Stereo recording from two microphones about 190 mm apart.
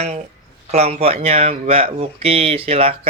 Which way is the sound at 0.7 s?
35° right (ahead or behind).